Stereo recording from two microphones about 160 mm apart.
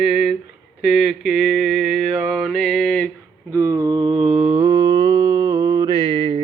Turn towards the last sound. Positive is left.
turn(degrees=-35)  # may be behind; listen again after turning